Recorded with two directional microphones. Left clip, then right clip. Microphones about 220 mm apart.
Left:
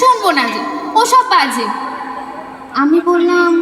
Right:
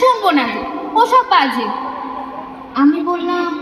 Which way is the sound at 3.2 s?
45° left (ahead or behind).